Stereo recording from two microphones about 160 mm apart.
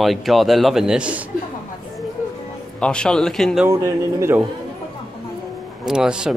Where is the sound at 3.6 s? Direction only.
20° right (ahead or behind).